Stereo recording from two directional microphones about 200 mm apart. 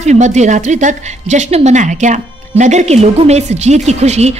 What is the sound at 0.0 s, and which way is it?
A woman's voice, 35° right (ahead or behind).